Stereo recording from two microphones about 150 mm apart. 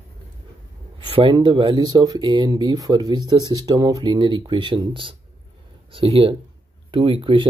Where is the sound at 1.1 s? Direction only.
35° right (ahead or behind).